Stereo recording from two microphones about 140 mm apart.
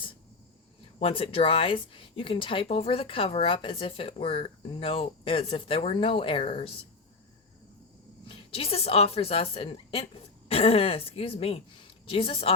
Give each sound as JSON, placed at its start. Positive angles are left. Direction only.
{"t": 0.9, "sound": "speech", "side_deg": 40}
{"t": 8.2, "sound": "a woman's voice", "side_deg": 40}